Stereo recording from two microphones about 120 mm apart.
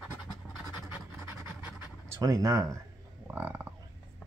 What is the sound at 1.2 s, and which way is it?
Pant, 20° right (ahead or behind).